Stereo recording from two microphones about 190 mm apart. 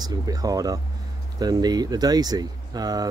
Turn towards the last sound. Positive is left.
turn(degrees=-20)  # may be behind; listen again after turning